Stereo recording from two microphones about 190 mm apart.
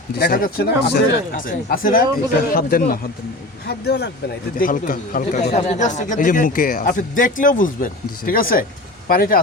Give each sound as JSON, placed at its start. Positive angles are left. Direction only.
{"t": 0.2, "sound": "speech", "side_deg": 50}
{"t": 4.5, "sound": "speech", "side_deg": 45}